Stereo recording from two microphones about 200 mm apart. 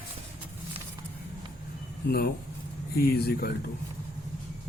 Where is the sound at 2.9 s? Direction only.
50° left (ahead or behind).